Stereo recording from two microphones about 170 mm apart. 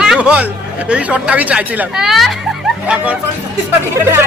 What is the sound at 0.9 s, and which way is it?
Speech, 5° right (ahead or behind).